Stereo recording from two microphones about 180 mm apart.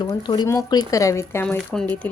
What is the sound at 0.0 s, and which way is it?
Speech, 25° left (ahead or behind).